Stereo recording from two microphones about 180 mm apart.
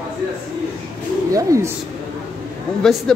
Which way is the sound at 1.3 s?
15° right (ahead or behind).